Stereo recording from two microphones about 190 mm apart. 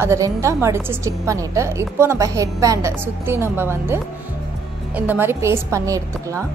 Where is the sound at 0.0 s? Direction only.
15° right (ahead or behind).